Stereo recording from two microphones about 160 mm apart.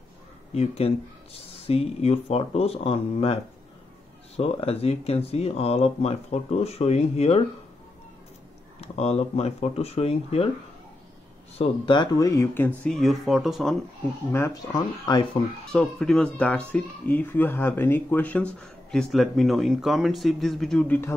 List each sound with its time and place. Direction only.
0.6 s speech: 40° left (ahead or behind)
4.4 s speech: 40° left (ahead or behind)
8.8 s speech: 40° left (ahead or behind)
11.5 s speech: 35° left (ahead or behind); by 12.9 s 15° left (ahead or behind)
12.9 s speech: centre (ahead or behind)
14.3 s speech: 20° left (ahead or behind)
15.7 s speech: 5° left (ahead or behind)